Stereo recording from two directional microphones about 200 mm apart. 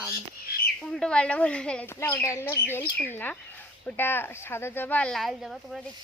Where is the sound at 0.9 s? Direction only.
5° left (ahead or behind).